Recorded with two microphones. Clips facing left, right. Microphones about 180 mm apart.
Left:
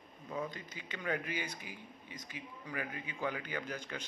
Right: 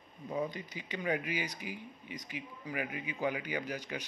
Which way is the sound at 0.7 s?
15° right (ahead or behind).